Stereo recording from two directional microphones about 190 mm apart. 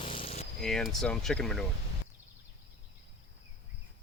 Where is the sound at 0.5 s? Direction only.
Centre (ahead or behind).